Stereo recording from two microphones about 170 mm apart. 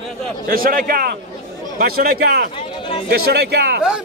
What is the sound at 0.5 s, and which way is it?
A man's voice, 55° right (ahead or behind).